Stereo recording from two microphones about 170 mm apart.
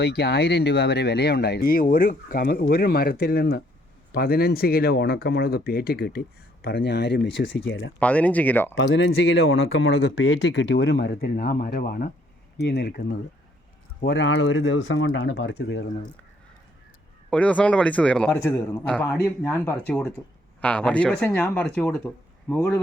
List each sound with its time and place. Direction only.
0.0 s speech: 75° left (ahead or behind)
7.9 s speech: 10° left (ahead or behind)
8.7 s speech: 90° left; by 12.1 s 60° left (ahead or behind)
12.6 s speech: 70° left (ahead or behind)
14.0 s speech: 90° left
17.3 s speech: 5° left (ahead or behind)
18.3 s a man's voice: 20° left (ahead or behind)
18.9 s speech: 5° left (ahead or behind)